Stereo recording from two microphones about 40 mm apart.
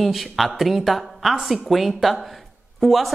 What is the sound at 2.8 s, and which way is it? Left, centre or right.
Speech, centre.